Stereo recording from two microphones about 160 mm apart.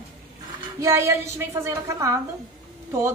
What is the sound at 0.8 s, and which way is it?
A woman's voice, 15° right (ahead or behind).